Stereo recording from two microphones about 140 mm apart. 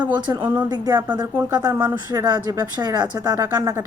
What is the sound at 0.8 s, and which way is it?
Speech, 15° right (ahead or behind).